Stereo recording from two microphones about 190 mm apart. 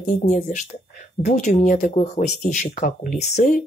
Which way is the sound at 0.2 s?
40° left (ahead or behind).